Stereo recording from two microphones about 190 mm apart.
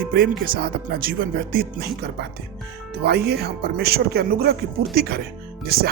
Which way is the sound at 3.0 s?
55° right (ahead or behind).